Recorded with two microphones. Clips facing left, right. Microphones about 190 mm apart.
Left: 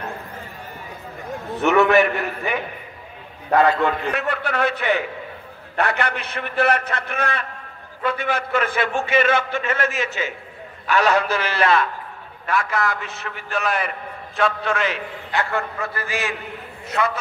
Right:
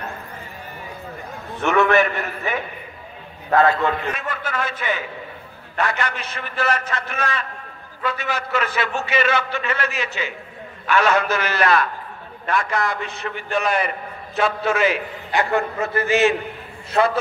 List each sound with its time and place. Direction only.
1.6 s a man's voice: 5° left (ahead or behind)
3.5 s a man's voice: centre (ahead or behind)
4.1 s a man's voice: 65° left (ahead or behind); by 11.9 s 25° left (ahead or behind)
12.4 s a man's voice: 5° left (ahead or behind); by 17.2 s 30° right (ahead or behind)